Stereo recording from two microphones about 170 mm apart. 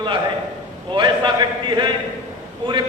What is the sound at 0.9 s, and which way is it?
Speech, 30° right (ahead or behind).